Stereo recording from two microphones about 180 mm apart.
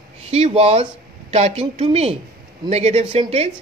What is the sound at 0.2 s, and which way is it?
A woman's voice, 35° right (ahead or behind).